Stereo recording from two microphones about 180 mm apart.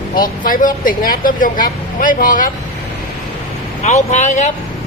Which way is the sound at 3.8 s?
40° left (ahead or behind).